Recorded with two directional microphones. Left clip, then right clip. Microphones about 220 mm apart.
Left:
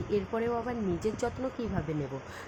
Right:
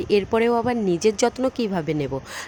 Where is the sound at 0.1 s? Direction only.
40° right (ahead or behind).